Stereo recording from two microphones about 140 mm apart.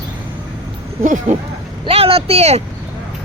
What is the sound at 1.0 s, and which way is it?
Speech, 65° right (ahead or behind).